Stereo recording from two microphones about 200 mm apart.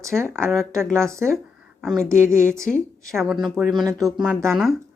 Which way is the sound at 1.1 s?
15° right (ahead or behind).